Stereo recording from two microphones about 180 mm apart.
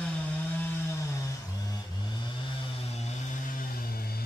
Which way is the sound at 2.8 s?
35° left (ahead or behind).